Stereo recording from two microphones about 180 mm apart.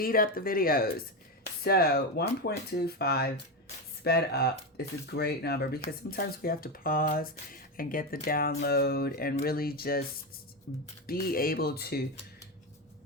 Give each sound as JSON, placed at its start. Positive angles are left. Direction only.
{"t": 0.0, "sound": "speech", "side_deg": 55}
{"t": 11.0, "sound": "speech", "side_deg": 55}